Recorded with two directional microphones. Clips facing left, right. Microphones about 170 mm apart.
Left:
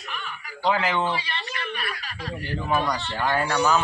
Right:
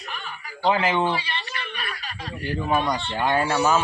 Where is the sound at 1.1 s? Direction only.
30° right (ahead or behind).